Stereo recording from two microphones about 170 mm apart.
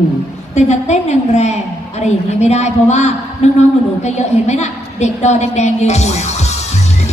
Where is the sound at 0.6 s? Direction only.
40° left (ahead or behind).